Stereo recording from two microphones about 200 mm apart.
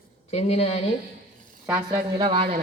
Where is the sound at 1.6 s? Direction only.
15° right (ahead or behind).